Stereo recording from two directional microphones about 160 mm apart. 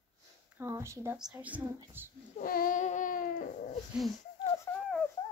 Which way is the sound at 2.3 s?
60° left (ahead or behind).